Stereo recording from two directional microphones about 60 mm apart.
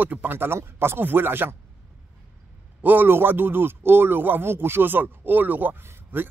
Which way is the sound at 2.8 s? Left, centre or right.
Right.